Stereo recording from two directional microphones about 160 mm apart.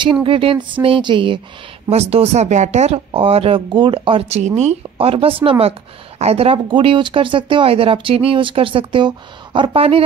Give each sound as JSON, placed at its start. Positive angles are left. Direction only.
{"t": 0.0, "sound": "speech", "side_deg": -30}